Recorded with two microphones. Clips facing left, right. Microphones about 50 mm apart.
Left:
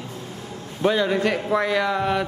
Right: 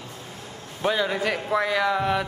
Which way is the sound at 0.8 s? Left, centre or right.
Centre.